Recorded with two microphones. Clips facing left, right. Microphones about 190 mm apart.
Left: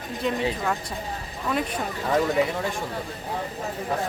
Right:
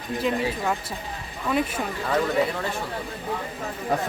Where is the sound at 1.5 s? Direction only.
5° right (ahead or behind).